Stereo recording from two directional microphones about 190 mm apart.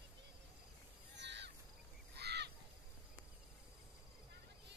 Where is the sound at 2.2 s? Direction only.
60° right (ahead or behind).